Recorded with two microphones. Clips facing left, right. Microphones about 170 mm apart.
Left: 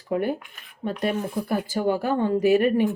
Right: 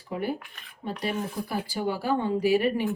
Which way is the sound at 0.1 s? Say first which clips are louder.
Left 6 dB; 50° left (ahead or behind).